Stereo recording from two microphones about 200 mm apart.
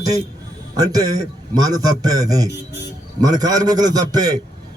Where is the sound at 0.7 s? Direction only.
20° right (ahead or behind).